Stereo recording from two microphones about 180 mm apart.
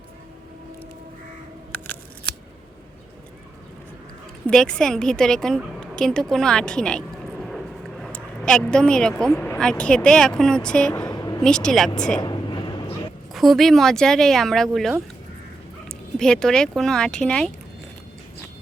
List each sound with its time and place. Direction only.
4.4 s a woman's voice: 5° left (ahead or behind)
7.4 s vehicle: centre (ahead or behind)
9.6 s a woman's voice: 5° left (ahead or behind)
11.1 s a sound: 20° left (ahead or behind)
11.4 s a woman's voice: 5° left (ahead or behind)
12.2 s a sound: 25° left (ahead or behind)
13.3 s a woman's voice: centre (ahead or behind)